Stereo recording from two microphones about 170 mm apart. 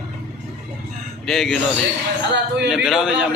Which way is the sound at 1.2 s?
Centre (ahead or behind).